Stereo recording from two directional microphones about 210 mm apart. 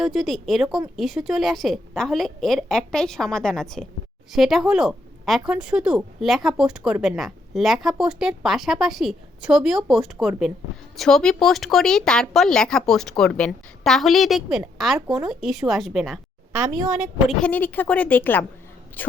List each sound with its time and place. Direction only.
0.0 s speech: centre (ahead or behind)
16.5 s a woman's voice: 15° right (ahead or behind)
17.2 s a woman's voice: 5° left (ahead or behind)